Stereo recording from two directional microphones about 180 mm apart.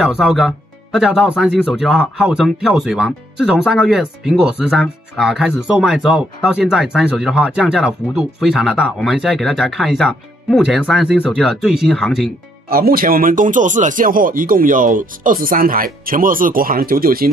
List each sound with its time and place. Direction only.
0.0 s speech: 5° right (ahead or behind)
12.6 s speech: 55° right (ahead or behind)